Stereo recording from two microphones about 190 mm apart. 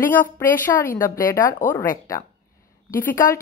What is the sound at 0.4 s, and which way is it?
Speech, 10° left (ahead or behind).